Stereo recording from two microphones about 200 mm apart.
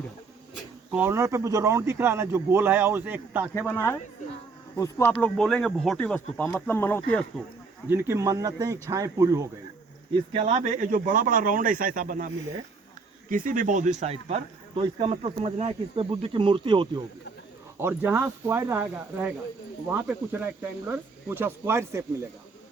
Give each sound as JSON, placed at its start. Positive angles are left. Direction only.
{"t": 0.9, "sound": "speech", "side_deg": -10}
{"t": 4.8, "sound": "speech", "side_deg": 10}
{"t": 7.9, "sound": "speech", "side_deg": -10}
{"t": 10.3, "sound": "speech", "side_deg": -35}
{"t": 13.3, "sound": "speech", "side_deg": -40}
{"t": 17.7, "sound": "speech", "side_deg": -10}